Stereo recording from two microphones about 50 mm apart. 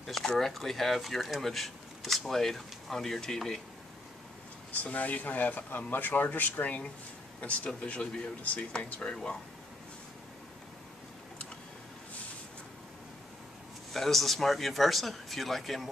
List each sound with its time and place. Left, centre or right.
0.0 s a sound: centre
0.4 s speech: centre
4.8 s speech: left
13.9 s speech: centre